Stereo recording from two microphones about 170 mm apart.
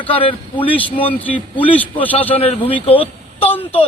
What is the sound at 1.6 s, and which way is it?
Speech, 10° left (ahead or behind).